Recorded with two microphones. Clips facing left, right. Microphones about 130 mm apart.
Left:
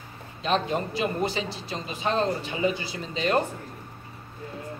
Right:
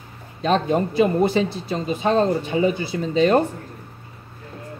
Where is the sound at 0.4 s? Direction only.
45° right (ahead or behind).